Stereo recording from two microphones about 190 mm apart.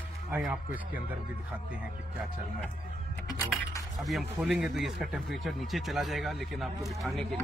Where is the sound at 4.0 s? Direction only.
Centre (ahead or behind).